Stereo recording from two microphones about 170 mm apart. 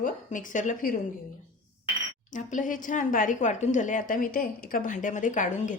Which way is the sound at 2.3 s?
50° left (ahead or behind).